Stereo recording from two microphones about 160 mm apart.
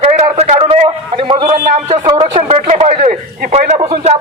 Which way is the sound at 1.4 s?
60° right (ahead or behind).